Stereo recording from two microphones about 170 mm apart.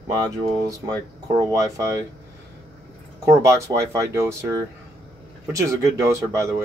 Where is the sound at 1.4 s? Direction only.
20° right (ahead or behind).